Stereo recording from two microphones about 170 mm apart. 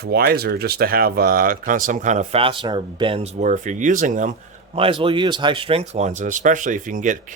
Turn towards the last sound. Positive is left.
turn(degrees=-50)  # may be behind; listen again after turning